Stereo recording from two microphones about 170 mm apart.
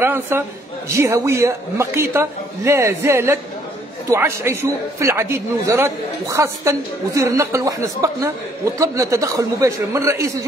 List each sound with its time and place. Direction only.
0.0 s a man's voice: 10° right (ahead or behind)